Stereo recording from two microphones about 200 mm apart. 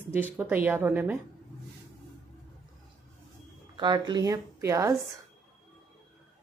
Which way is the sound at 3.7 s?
20° right (ahead or behind).